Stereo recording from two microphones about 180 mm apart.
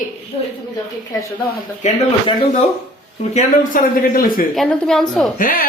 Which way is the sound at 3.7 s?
50° left (ahead or behind).